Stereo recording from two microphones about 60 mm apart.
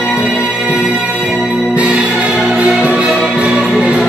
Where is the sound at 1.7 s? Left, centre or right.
Right.